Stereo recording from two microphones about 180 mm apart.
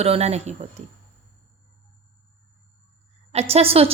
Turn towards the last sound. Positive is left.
turn(degrees=-35)  # may be behind; listen again after turning